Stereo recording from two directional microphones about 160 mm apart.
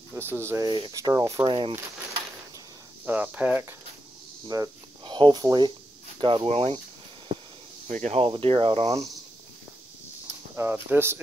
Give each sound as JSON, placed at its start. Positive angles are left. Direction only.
{"t": 0.1, "sound": "speech", "side_deg": -15}
{"t": 3.1, "sound": "speech", "side_deg": -10}
{"t": 4.5, "sound": "speech", "side_deg": -25}
{"t": 7.9, "sound": "speech", "side_deg": -45}
{"t": 10.2, "sound": "speech", "side_deg": -15}